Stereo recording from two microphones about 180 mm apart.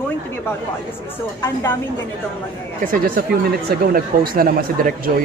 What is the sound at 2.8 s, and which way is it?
Speech, 55° right (ahead or behind).